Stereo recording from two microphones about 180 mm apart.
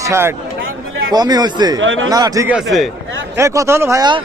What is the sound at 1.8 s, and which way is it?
Speech, 90° right.